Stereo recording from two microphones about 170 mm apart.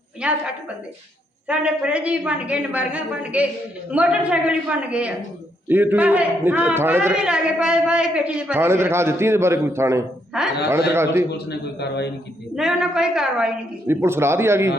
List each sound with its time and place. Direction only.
0.2 s a man's voice: 5° right (ahead or behind)
1.5 s a man's voice: 5° right (ahead or behind)
10.3 s a man's voice: 5° right (ahead or behind)
10.9 s a man's voice: 15° right (ahead or behind)
11.3 s a man's voice: 75° left (ahead or behind)
12.5 s a man's voice: 5° right (ahead or behind)